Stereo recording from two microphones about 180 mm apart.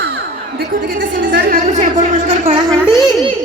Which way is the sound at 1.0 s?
75° right (ahead or behind).